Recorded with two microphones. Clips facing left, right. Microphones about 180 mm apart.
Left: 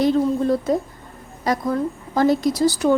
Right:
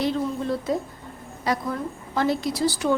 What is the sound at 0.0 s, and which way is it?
A woman's voice, 45° left (ahead or behind).